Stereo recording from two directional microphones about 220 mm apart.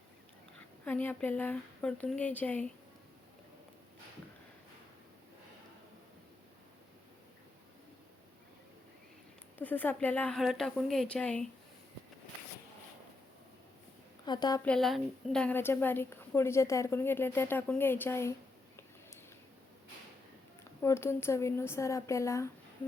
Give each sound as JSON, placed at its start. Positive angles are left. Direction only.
{"t": 0.9, "sound": "a woman's voice", "side_deg": 10}
{"t": 9.6, "sound": "speech", "side_deg": 10}
{"t": 14.3, "sound": "a woman's voice", "side_deg": 20}
{"t": 14.6, "sound": "a woman's voice", "side_deg": 5}
{"t": 20.8, "sound": "a woman's voice", "side_deg": 10}